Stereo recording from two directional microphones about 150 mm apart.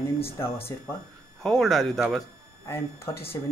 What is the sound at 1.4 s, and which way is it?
Speech, centre (ahead or behind).